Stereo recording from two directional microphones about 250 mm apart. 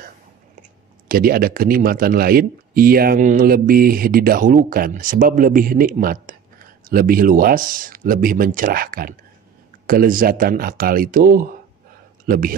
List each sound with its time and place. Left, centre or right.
0.6 s speech: right